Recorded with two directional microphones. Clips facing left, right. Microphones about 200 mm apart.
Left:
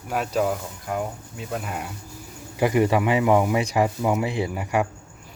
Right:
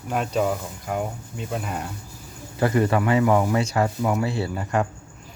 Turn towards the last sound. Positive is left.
turn(degrees=10)  # may be behind; listen again after turning